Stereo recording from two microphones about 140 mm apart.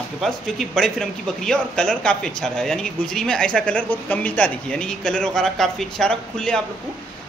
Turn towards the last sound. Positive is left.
turn(degrees=5)  # may be behind; listen again after turning